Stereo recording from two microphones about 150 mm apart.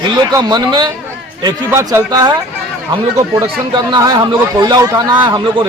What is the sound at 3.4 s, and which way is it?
A man's voice, 30° right (ahead or behind).